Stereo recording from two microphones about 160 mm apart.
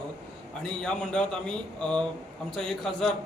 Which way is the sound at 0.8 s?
5° left (ahead or behind).